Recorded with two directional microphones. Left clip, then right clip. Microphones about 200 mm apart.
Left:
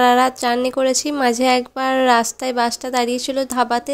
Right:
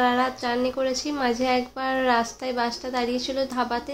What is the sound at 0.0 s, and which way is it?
A woman's voice, 50° left (ahead or behind).